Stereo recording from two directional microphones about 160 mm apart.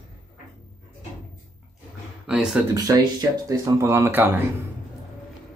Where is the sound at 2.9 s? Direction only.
20° right (ahead or behind).